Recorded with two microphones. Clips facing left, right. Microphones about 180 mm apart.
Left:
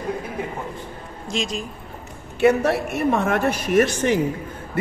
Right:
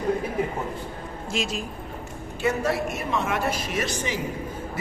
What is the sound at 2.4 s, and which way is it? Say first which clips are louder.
A man's voice: left 7 dB; 65° left (ahead or behind).